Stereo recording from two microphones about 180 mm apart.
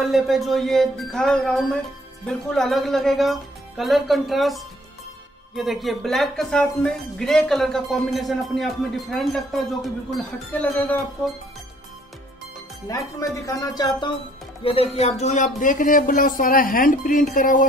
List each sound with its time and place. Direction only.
0.0 s speech: centre (ahead or behind)
13.3 s speech: 20° left (ahead or behind); by 17.6 s 50° left (ahead or behind)